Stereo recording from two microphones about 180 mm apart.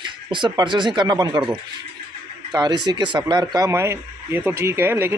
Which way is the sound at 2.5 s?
25° right (ahead or behind).